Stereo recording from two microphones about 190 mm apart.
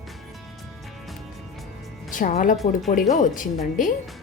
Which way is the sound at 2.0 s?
45° left (ahead or behind).